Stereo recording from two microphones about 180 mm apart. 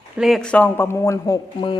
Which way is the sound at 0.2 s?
Centre (ahead or behind).